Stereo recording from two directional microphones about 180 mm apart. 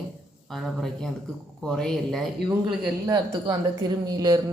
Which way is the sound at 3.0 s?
25° right (ahead or behind).